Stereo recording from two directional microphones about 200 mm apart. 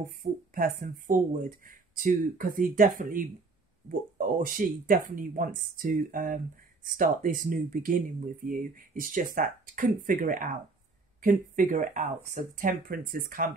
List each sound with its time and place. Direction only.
0.0 s speech: 40° right (ahead or behind)
4.4 s speech: 45° right (ahead or behind)